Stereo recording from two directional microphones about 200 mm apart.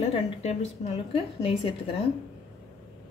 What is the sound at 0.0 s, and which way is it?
A woman's voice, 30° left (ahead or behind).